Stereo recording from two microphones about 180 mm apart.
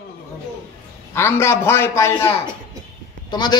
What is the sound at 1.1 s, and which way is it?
A man's voice, 15° left (ahead or behind).